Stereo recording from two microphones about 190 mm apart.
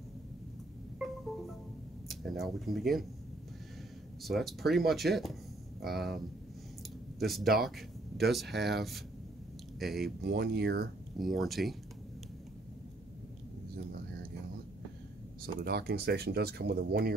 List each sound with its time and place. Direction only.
0.9 s music: centre (ahead or behind)
2.0 s speech: centre (ahead or behind)
4.2 s speech: centre (ahead or behind)
7.2 s speech: centre (ahead or behind)
10.2 s speech: 60° right (ahead or behind)
11.1 s speech: centre (ahead or behind)
15.4 s speech: 55° right (ahead or behind)